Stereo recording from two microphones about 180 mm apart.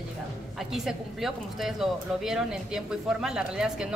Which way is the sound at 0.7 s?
Centre (ahead or behind).